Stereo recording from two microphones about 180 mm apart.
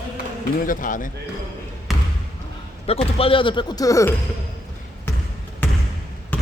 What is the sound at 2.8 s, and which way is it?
A man's voice, 35° left (ahead or behind).